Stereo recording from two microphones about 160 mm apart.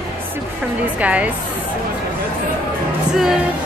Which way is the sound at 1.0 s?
10° right (ahead or behind).